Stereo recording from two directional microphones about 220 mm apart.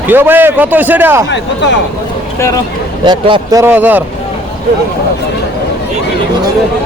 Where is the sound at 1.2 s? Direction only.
55° left (ahead or behind).